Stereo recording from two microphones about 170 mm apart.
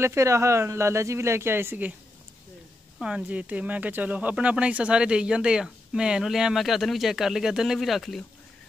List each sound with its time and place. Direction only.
0.0 s speech: 15° right (ahead or behind)
3.0 s speech: 5° right (ahead or behind)